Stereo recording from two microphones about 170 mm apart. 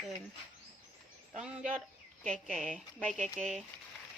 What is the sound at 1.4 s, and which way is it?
Speech, 5° right (ahead or behind).